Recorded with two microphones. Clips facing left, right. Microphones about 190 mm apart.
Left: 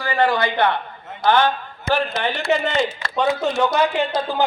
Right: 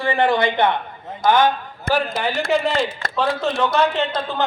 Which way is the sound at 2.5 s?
Centre (ahead or behind).